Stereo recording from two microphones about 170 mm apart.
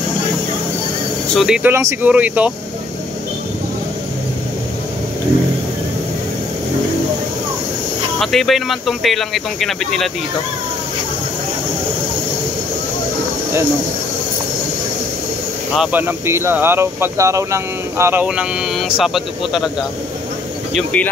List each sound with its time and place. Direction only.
1.3 s speech: 5° right (ahead or behind)
1.7 s speech: 15° right (ahead or behind)
8.2 s speech: centre (ahead or behind)
15.8 s speech: 10° right (ahead or behind)
20.7 s speech: 10° left (ahead or behind)